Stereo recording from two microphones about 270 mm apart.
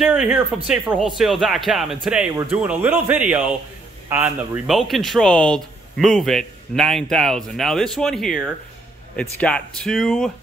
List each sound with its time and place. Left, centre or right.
0.0 s speech: centre